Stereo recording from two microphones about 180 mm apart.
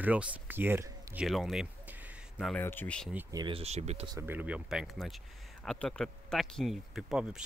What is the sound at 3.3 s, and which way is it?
Speech, 25° right (ahead or behind).